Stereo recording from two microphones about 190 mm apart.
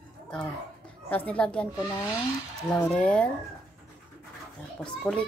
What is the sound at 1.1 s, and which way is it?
Speech, 5° left (ahead or behind).